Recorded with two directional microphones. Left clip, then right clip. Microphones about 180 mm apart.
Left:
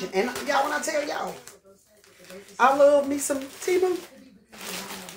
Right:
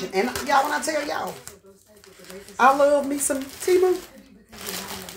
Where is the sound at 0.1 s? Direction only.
Centre (ahead or behind).